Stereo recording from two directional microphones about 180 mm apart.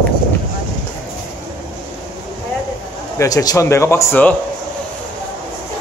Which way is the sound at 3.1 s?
20° left (ahead or behind).